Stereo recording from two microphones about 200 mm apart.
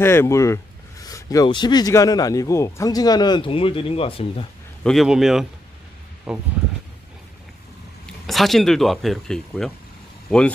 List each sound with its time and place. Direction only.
0.0 s speech: 10° left (ahead or behind); by 4.5 s 30° left (ahead or behind)
4.8 s speech: centre (ahead or behind)
8.3 s speech: centre (ahead or behind)